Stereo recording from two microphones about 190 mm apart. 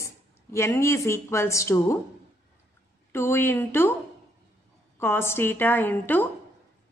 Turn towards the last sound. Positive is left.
turn(degrees=10)  # may be behind; listen again after turning